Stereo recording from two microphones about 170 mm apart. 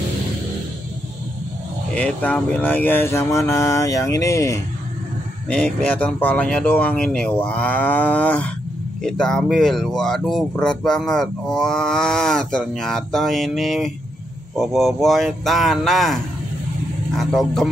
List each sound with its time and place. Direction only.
2.0 s speech: 5° left (ahead or behind)
17.2 s speech: centre (ahead or behind)